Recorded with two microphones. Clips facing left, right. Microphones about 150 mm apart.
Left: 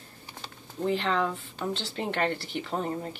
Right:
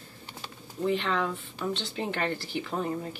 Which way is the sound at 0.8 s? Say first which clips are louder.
Left 1 dB; 35° left (ahead or behind).